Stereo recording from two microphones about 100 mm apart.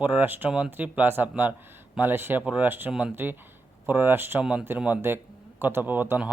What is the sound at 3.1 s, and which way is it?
Speech, 20° right (ahead or behind).